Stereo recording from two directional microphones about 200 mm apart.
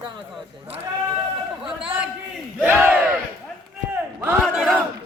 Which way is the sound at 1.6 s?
5° right (ahead or behind).